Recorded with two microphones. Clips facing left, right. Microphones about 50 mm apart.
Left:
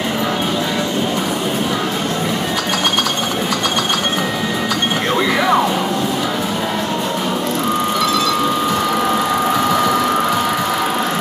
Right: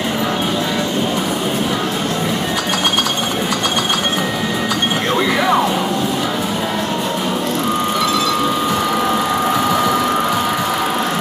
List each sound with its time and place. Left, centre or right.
5.1 s music: centre
9.5 s sewing machine: centre